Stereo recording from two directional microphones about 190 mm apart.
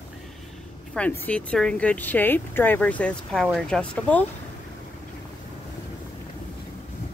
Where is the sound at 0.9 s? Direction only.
10° left (ahead or behind).